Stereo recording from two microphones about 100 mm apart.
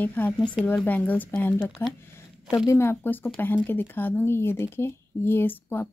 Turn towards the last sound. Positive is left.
turn(degrees=20)  # may be behind; listen again after turning